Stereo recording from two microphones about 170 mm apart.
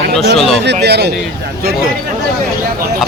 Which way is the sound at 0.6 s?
85° right.